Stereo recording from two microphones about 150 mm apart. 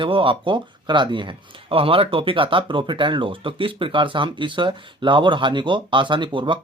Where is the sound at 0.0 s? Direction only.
35° right (ahead or behind).